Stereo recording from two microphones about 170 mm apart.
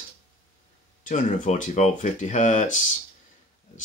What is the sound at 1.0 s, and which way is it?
Speech, 45° left (ahead or behind).